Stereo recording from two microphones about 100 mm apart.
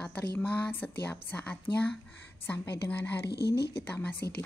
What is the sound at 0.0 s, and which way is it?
A woman's voice, 10° left (ahead or behind).